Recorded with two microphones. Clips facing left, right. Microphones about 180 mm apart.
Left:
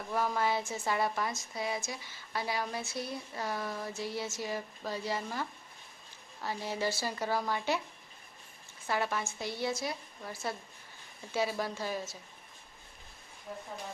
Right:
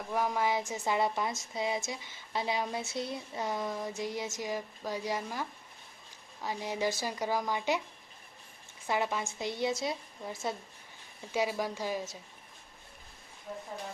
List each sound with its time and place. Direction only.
0.1 s speech: 15° right (ahead or behind)
8.9 s speech: 15° right (ahead or behind)